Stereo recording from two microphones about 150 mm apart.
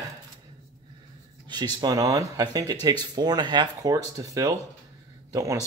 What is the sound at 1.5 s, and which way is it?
Speech, 30° right (ahead or behind).